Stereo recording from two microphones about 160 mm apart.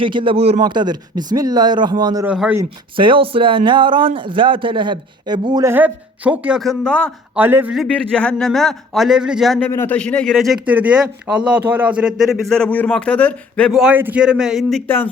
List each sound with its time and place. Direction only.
0.0 s speech: 30° right (ahead or behind)
0.6 s speech: 25° right (ahead or behind)
2.2 s a man's voice: 10° right (ahead or behind)
2.9 s speech: 30° right (ahead or behind)
5.7 s a man's voice: 10° right (ahead or behind)
7.3 s a man's voice: 10° right (ahead or behind)
7.8 s a man's voice: 5° left (ahead or behind)
9.6 s a man's voice: 15° left (ahead or behind)
14.8 s a man's voice: 10° left (ahead or behind)